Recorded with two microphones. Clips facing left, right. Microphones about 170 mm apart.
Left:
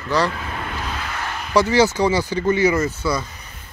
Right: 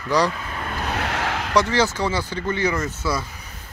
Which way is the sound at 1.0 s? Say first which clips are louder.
Right 4 dB; 80° right.